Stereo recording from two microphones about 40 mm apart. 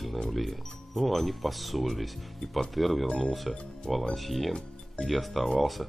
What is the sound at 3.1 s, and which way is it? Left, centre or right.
Speech, centre.